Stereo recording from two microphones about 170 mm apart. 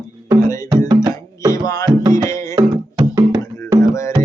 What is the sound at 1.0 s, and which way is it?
Music, 20° right (ahead or behind).